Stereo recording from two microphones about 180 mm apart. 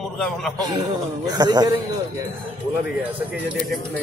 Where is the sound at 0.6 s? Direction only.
20° right (ahead or behind).